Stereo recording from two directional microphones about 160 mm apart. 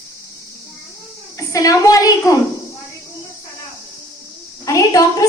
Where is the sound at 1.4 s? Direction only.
20° left (ahead or behind).